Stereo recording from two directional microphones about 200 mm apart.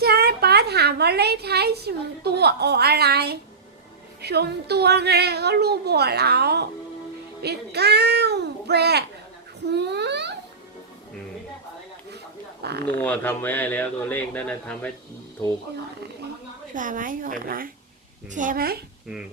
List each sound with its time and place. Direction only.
0.0 s a woman's voice: 50° right (ahead or behind)
12.6 s a child's voice: 55° right (ahead or behind)
13.0 s speech: 10° left (ahead or behind)
16.7 s a woman's voice: 40° right (ahead or behind)